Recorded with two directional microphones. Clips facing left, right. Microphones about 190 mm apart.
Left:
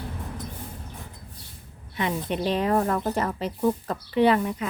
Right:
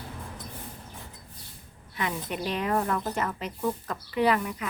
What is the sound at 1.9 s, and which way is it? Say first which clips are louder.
Speech: left 5 dB; 25° left (ahead or behind).